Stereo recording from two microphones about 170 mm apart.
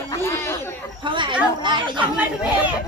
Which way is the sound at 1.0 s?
30° right (ahead or behind).